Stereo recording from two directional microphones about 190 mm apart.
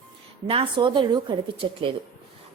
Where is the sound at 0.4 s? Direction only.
30° right (ahead or behind).